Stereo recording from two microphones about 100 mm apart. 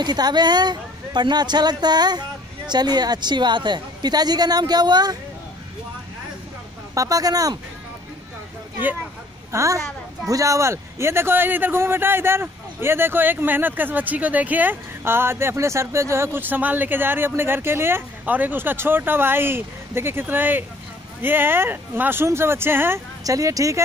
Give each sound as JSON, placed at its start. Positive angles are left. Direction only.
{"t": 0.0, "sound": "speech", "side_deg": -45}
{"t": 7.0, "sound": "speech", "side_deg": -35}
{"t": 9.5, "sound": "speech", "side_deg": -30}
{"t": 23.2, "sound": "speech", "side_deg": -35}